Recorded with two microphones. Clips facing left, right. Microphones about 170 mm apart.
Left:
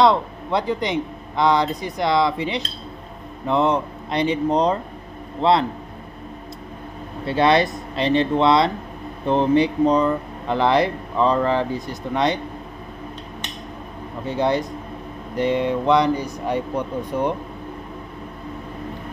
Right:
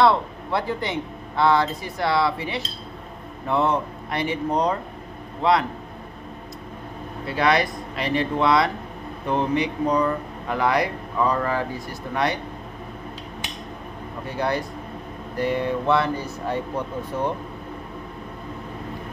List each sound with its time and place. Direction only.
0.0 s speech: 20° left (ahead or behind)
7.2 s speech: 25° left (ahead or behind)
14.2 s speech: 20° left (ahead or behind)